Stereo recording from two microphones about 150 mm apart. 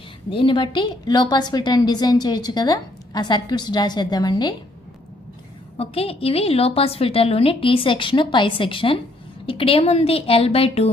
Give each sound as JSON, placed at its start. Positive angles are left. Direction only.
{"t": 0.3, "sound": "a woman's voice", "side_deg": 35}
{"t": 5.8, "sound": "a woman's voice", "side_deg": 40}